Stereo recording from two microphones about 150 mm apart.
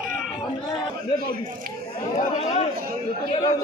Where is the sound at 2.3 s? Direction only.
45° left (ahead or behind).